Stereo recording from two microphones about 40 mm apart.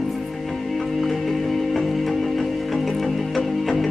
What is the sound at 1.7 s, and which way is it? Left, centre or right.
Music, centre.